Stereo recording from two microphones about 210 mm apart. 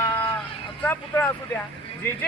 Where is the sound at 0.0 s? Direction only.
10° left (ahead or behind).